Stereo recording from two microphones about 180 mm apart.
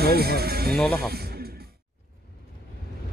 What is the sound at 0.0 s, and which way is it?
Speech, 60° right (ahead or behind).